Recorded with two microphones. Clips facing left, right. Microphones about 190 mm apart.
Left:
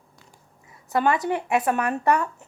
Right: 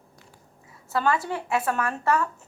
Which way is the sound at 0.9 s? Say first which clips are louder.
Left 3 dB; 20° left (ahead or behind).